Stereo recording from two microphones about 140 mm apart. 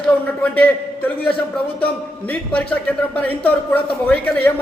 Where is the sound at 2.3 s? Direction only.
10° left (ahead or behind).